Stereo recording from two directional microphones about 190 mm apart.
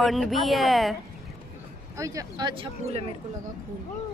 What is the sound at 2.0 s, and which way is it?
Speech, 15° right (ahead or behind).